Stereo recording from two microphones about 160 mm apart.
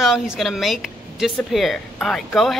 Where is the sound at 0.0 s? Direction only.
Centre (ahead or behind).